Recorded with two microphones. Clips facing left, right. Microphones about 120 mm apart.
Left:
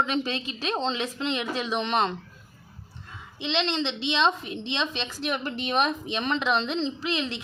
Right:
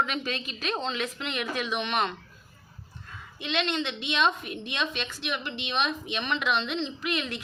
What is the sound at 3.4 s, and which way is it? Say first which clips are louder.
A woman's voice: left 2 dB; 25° left (ahead or behind).